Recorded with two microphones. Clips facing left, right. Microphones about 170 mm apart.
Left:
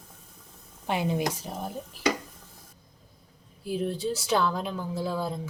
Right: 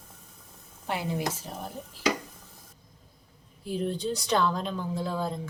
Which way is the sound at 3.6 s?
5° left (ahead or behind).